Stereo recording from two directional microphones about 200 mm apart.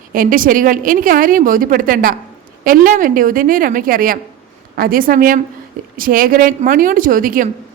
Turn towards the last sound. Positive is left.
turn(degrees=-45)  # may be behind; listen again after turning